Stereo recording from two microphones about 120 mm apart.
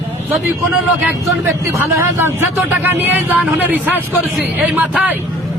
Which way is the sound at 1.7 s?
20° right (ahead or behind).